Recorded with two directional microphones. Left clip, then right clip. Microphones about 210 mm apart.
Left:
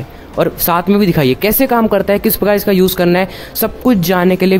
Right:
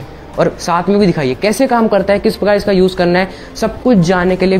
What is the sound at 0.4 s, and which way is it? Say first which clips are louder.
Speech: even; 55° left (ahead or behind).